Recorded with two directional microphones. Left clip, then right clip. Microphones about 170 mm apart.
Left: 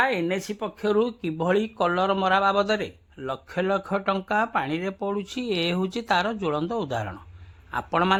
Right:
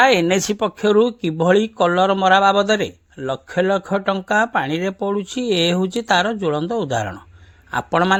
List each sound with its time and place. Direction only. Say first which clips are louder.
0.0 s speech: right 10 dB; 50° right (ahead or behind); by 8.2 s 30° right (ahead or behind)